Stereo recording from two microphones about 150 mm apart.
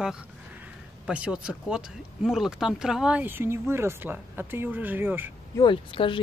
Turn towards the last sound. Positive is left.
turn(degrees=35)  # may be behind; listen again after turning